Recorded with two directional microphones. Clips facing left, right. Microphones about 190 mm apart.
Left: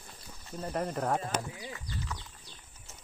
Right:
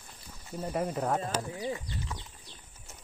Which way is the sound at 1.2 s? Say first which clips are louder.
Right 2 dB; 35° right (ahead or behind).